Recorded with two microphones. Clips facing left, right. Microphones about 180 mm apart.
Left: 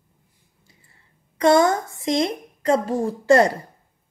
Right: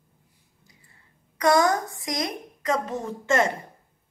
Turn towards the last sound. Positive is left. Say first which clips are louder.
# left 7 dB
turn(degrees=35)  # may be behind; listen again after turning